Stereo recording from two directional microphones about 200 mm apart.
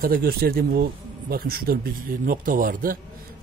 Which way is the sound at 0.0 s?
50° right (ahead or behind).